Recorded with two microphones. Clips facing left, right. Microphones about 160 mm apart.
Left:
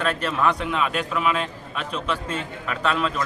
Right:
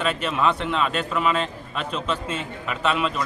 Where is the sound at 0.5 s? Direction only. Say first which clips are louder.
Even; 5° left (ahead or behind).